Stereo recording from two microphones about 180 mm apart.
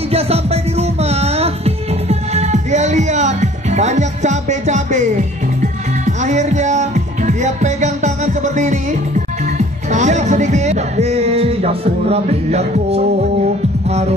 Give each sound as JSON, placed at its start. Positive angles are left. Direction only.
{"t": 0.1, "sound": "music", "side_deg": -35}